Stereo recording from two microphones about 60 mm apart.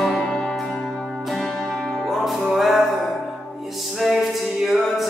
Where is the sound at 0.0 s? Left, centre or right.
Centre.